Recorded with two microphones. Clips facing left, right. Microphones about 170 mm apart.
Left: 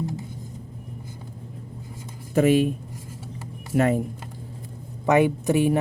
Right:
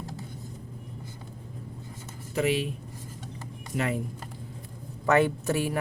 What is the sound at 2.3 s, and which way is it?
Speech, 50° left (ahead or behind).